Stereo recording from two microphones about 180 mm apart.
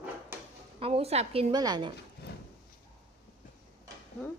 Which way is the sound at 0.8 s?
35° right (ahead or behind).